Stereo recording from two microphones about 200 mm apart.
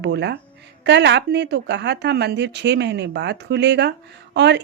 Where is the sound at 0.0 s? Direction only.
60° right (ahead or behind).